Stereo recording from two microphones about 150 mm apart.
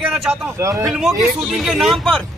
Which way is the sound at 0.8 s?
Centre (ahead or behind).